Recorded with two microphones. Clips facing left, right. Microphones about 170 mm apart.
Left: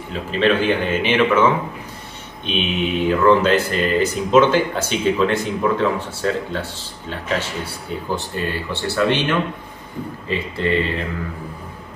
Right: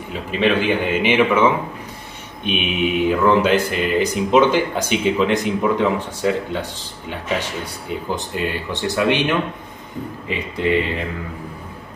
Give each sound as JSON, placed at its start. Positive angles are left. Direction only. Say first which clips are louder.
{"t": 0.4, "sound": "speech", "louder": "left 1 dB", "side_deg": -15}
{"t": 10.2, "sound": "speech", "louder": "right 1 dB", "side_deg": -15}